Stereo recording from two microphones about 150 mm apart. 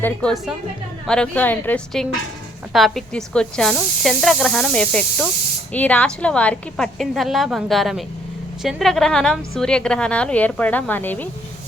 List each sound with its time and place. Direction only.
0.0 s a woman's voice: 5° left (ahead or behind)